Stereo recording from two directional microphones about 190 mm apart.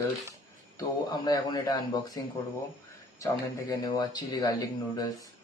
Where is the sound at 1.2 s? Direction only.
20° left (ahead or behind).